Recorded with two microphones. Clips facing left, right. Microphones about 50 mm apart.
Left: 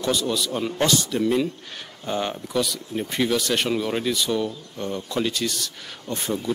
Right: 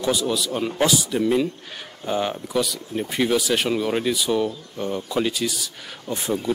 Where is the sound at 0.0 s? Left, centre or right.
Centre.